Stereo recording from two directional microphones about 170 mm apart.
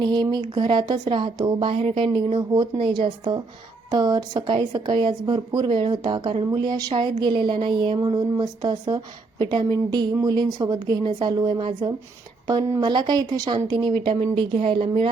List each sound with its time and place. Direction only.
0.0 s a woman's voice: 25° right (ahead or behind)